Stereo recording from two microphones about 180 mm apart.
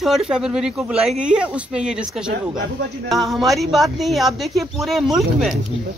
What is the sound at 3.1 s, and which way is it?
Speech, centre (ahead or behind).